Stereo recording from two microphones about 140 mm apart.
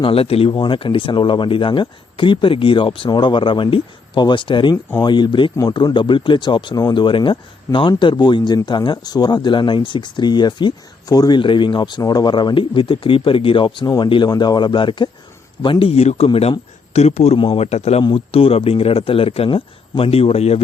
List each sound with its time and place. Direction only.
0.0 s speech: 45° left (ahead or behind)